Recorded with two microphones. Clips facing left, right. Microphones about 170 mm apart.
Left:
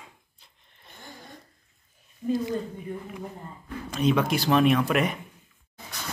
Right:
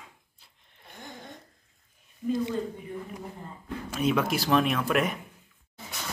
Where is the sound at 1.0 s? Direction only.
20° right (ahead or behind).